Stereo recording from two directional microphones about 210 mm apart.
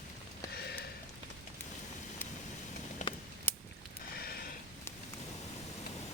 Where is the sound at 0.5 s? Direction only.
50° left (ahead or behind).